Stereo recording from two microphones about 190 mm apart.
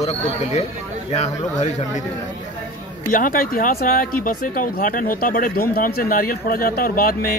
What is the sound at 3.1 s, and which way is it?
Speech, 45° left (ahead or behind).